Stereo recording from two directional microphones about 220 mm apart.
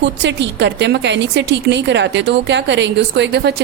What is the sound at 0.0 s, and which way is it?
Speech, 50° right (ahead or behind).